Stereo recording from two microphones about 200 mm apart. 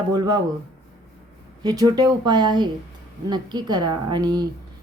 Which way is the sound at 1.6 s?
20° right (ahead or behind).